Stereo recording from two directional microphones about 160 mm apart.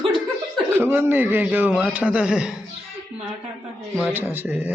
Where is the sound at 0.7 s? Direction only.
15° right (ahead or behind).